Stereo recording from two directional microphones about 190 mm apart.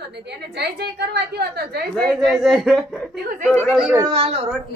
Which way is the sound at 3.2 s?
45° right (ahead or behind).